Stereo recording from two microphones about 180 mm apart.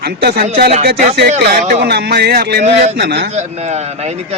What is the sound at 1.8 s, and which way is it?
Speech, 65° right (ahead or behind).